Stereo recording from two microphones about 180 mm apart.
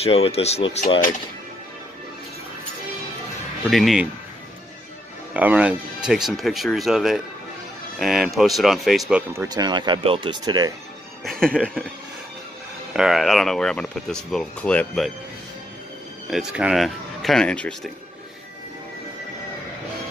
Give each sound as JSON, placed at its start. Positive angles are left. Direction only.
{"t": 0.0, "sound": "speech", "side_deg": 35}
{"t": 3.7, "sound": "speech", "side_deg": 0}
{"t": 5.3, "sound": "speech", "side_deg": -10}
{"t": 9.3, "sound": "speech", "side_deg": -15}
{"t": 11.2, "sound": "speech", "side_deg": 5}
{"t": 12.9, "sound": "speech", "side_deg": 0}
{"t": 16.3, "sound": "speech", "side_deg": -5}